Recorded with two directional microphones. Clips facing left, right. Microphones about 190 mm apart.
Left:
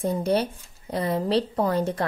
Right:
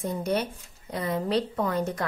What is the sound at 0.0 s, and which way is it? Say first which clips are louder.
A woman's voice: left 4 dB; 30° left (ahead or behind).